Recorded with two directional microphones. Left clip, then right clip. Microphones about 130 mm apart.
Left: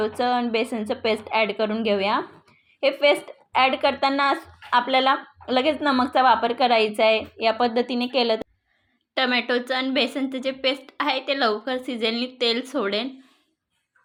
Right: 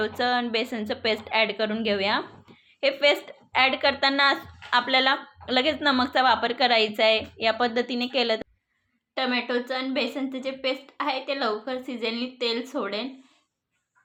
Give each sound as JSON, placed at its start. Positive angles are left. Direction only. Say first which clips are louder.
{"t": 0.0, "sound": "a woman's voice", "louder": "left 2 dB", "side_deg": 25}
{"t": 9.1, "sound": "a woman's voice", "louder": "left 4 dB", "side_deg": 50}